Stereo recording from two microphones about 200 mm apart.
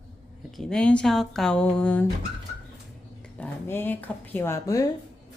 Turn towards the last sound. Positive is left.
turn(degrees=15)  # may be behind; listen again after turning